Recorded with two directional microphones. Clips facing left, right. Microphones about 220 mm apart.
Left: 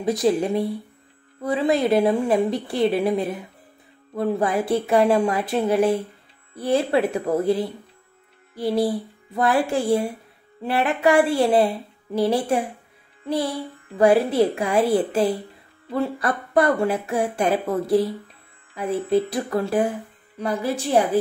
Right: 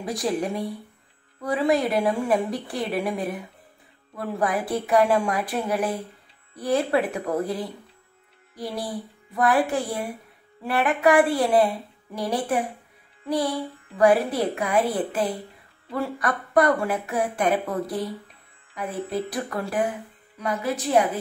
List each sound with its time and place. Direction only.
0.0 s speech: 25° left (ahead or behind)
9.3 s speech: 25° left (ahead or behind)
13.9 s a woman's voice: 25° left (ahead or behind)